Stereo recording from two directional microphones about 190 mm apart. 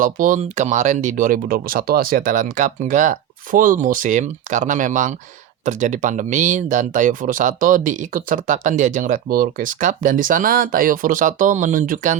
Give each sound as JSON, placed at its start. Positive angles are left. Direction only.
{"t": 0.0, "sound": "speech", "side_deg": -45}